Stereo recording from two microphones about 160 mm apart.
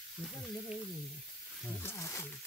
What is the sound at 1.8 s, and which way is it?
Speech, 15° left (ahead or behind).